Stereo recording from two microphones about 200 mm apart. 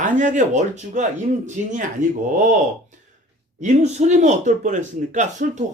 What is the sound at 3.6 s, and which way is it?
Speech, 35° right (ahead or behind).